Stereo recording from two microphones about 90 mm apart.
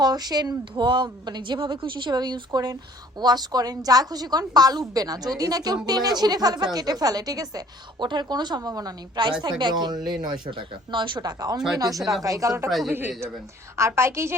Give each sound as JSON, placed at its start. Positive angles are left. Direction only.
{"t": 0.0, "sound": "a woman's voice", "side_deg": -50}
{"t": 8.0, "sound": "a woman's voice", "side_deg": -55}
{"t": 12.9, "sound": "a woman's voice", "side_deg": -25}